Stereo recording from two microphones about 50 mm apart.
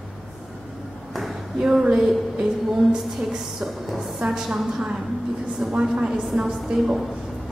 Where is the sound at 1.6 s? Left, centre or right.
Centre.